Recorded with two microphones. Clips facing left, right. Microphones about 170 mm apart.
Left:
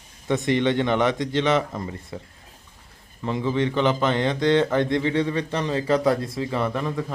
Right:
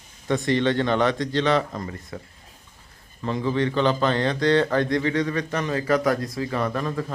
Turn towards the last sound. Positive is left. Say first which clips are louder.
# even
turn(degrees=15)  # may be behind; listen again after turning